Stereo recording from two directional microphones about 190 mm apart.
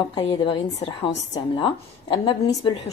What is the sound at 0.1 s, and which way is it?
A woman's voice, 25° left (ahead or behind).